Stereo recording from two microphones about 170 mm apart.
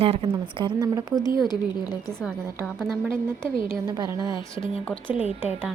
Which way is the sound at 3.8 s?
25° right (ahead or behind).